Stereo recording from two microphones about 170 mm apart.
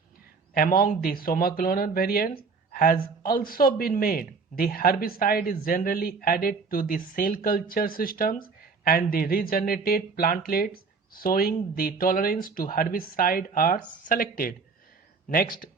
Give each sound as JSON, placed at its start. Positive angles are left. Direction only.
{"t": 0.5, "sound": "speech", "side_deg": 60}